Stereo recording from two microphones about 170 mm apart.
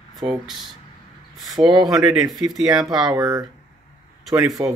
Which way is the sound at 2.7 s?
25° right (ahead or behind).